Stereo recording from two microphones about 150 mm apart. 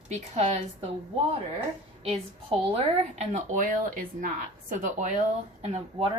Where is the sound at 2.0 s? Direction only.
40° right (ahead or behind); by 5.2 s 60° right (ahead or behind).